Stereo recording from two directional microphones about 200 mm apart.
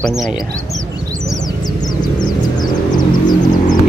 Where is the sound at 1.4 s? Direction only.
20° left (ahead or behind).